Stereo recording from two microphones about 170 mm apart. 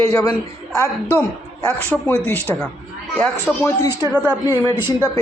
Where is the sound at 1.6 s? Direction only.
10° left (ahead or behind).